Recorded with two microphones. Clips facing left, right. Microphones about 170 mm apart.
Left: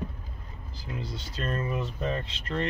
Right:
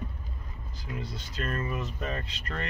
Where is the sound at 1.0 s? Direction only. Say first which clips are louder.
Left 1 dB; 25° left (ahead or behind).